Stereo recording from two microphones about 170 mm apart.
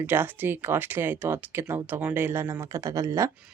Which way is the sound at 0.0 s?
10° right (ahead or behind).